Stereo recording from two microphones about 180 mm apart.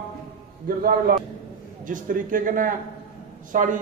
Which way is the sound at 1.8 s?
45° right (ahead or behind).